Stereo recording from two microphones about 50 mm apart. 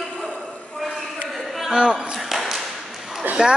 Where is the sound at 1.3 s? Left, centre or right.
Centre.